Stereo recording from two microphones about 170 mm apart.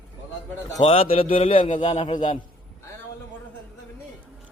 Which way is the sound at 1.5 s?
50° left (ahead or behind).